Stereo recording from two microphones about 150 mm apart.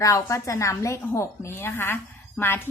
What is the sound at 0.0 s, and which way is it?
A woman's voice, 20° left (ahead or behind).